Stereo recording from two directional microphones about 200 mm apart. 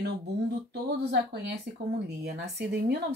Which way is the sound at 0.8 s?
55° right (ahead or behind).